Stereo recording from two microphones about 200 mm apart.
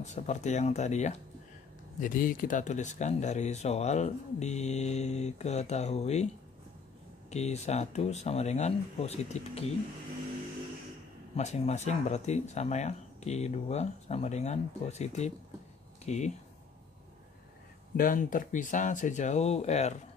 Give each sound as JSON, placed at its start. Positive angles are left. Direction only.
{"t": 0.0, "sound": "speech", "side_deg": 35}
{"t": 7.2, "sound": "speech", "side_deg": 35}
{"t": 11.3, "sound": "speech", "side_deg": 35}
{"t": 17.9, "sound": "speech", "side_deg": 45}